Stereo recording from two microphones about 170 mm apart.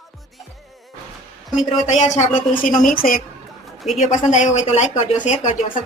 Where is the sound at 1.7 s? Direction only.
40° left (ahead or behind).